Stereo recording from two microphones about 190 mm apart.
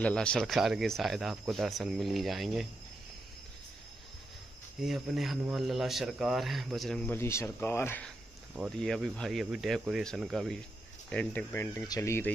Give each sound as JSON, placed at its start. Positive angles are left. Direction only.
{"t": 0.0, "sound": "a man's voice", "side_deg": 5}
{"t": 4.7, "sound": "a man's voice", "side_deg": 0}
{"t": 8.5, "sound": "a man's voice", "side_deg": 0}